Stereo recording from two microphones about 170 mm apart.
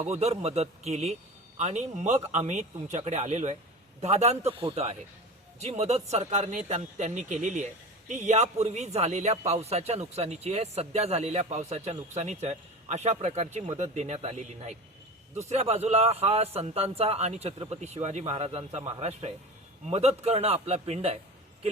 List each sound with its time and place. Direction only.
0.0 s speech: 40° right (ahead or behind)